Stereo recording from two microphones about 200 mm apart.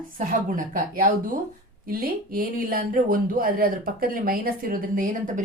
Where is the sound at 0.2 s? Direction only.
40° right (ahead or behind).